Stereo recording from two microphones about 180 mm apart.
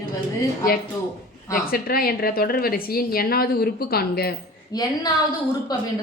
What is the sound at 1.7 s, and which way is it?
A woman's voice, 55° left (ahead or behind).